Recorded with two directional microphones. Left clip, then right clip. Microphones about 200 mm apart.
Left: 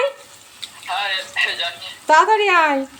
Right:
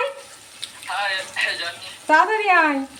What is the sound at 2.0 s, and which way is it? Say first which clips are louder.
Speech: left 3 dB; 50° left (ahead or behind).